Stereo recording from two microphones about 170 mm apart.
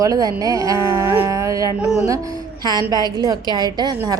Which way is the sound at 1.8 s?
5° right (ahead or behind).